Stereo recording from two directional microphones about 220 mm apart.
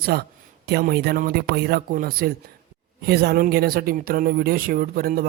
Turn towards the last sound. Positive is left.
turn(degrees=-40)  # may be behind; listen again after turning